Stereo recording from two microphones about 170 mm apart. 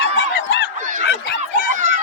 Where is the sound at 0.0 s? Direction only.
90° left.